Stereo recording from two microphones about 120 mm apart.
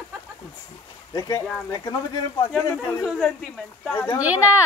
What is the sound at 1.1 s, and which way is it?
Speech, 30° left (ahead or behind).